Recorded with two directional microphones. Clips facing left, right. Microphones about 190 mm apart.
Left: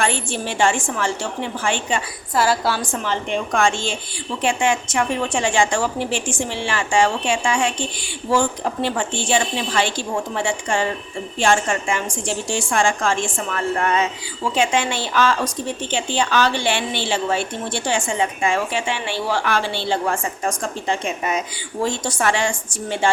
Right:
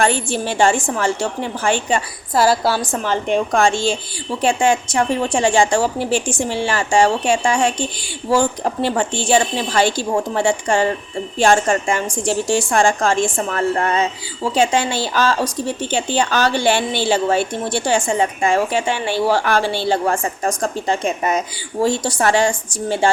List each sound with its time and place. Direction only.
0.0 s a woman's voice: 40° right (ahead or behind)